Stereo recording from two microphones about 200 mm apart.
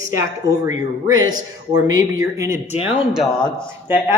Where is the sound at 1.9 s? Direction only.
15° right (ahead or behind).